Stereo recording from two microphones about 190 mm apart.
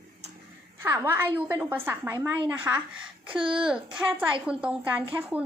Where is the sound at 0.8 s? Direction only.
15° right (ahead or behind).